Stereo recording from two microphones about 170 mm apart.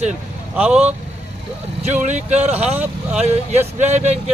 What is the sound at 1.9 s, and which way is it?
Speech, 45° right (ahead or behind).